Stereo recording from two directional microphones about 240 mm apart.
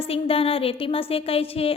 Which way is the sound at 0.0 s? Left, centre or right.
Left.